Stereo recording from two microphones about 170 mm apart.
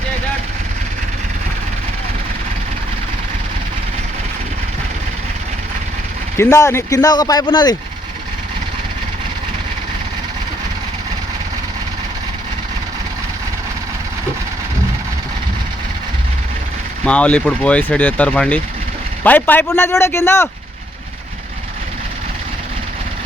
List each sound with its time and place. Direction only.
6.3 s speech: 15° left (ahead or behind)
17.1 s speech: 5° left (ahead or behind)